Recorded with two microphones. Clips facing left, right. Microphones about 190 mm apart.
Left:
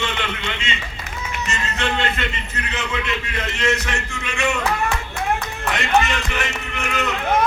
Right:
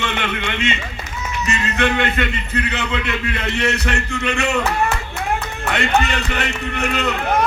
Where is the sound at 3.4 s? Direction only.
60° right (ahead or behind).